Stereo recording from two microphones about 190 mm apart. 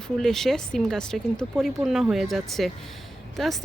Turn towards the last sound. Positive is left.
turn(degrees=0)  # may be behind; listen again after turning